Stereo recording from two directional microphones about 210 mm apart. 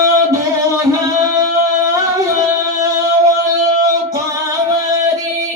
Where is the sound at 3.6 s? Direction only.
15° right (ahead or behind).